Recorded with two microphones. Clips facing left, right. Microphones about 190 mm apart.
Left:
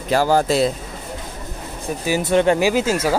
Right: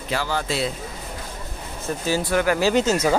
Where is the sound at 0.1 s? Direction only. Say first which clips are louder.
Left 9 dB; 40° left (ahead or behind).